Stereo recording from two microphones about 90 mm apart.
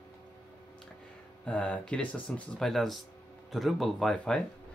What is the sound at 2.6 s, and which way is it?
Speech, 5° left (ahead or behind).